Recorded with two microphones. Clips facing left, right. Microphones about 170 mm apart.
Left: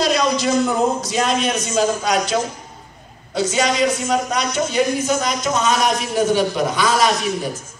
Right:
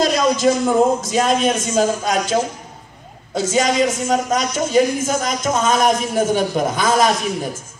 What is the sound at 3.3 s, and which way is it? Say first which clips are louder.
A man's voice: right 1 dB; 45° right (ahead or behind).